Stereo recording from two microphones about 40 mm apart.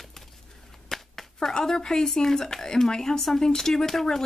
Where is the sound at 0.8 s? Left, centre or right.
Centre.